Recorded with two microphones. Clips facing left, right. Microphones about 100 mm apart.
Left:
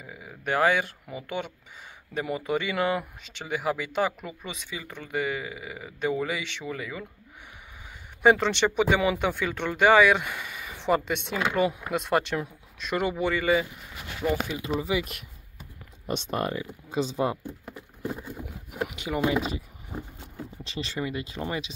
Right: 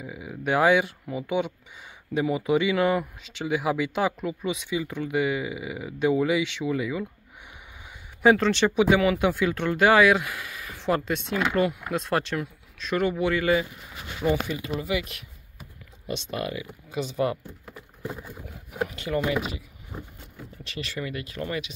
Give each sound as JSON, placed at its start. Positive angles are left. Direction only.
{"t": 0.0, "sound": "speech", "side_deg": -5}
{"t": 8.2, "sound": "speech", "side_deg": 0}
{"t": 13.2, "sound": "speech", "side_deg": 0}
{"t": 16.1, "sound": "speech", "side_deg": 45}
{"t": 16.9, "sound": "speech", "side_deg": 25}
{"t": 18.9, "sound": "speech", "side_deg": 15}
{"t": 19.3, "sound": "speech", "side_deg": 30}